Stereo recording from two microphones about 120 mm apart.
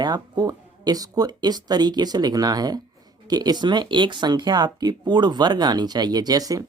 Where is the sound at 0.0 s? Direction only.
35° right (ahead or behind).